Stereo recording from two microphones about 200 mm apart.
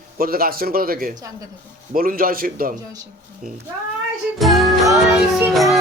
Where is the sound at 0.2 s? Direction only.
45° right (ahead or behind).